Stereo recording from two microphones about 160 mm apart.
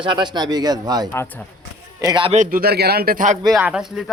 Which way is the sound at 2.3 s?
55° right (ahead or behind).